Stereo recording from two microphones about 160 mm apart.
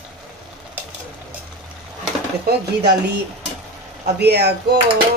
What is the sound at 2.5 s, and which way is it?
Speech, 90° right.